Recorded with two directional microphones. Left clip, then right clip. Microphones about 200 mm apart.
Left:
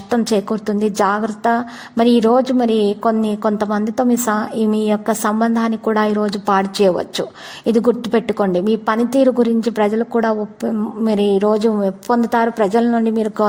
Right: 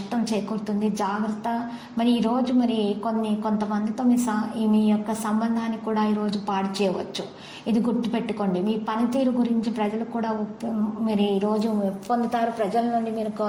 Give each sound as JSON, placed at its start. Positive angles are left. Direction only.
{"t": 0.1, "sound": "a woman's voice", "side_deg": 50}